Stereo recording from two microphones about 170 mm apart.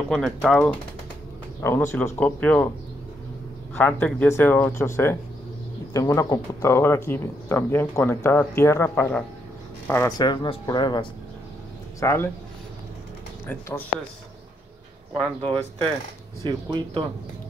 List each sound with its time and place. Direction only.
0.1 s speech: centre (ahead or behind)
1.6 s speech: 15° left (ahead or behind)
3.7 s speech: 10° left (ahead or behind); by 11.1 s 25° left (ahead or behind)
12.0 s speech: 15° left (ahead or behind)
13.5 s speech: 10° left (ahead or behind)
16.4 s speech: 25° right (ahead or behind)